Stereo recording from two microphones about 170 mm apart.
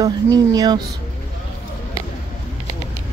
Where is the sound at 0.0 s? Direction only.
20° right (ahead or behind).